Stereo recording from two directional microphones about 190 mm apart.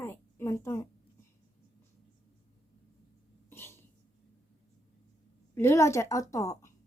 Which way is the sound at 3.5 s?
10° left (ahead or behind).